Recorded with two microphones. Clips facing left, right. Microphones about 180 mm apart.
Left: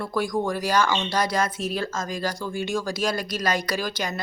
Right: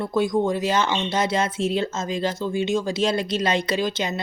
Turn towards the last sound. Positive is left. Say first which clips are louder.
# right 4 dB
turn(degrees=-25)  # may be behind; listen again after turning